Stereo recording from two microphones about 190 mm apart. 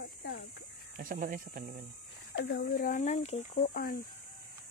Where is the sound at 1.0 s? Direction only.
45° right (ahead or behind).